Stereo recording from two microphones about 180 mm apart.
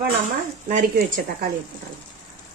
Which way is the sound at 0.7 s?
45° right (ahead or behind).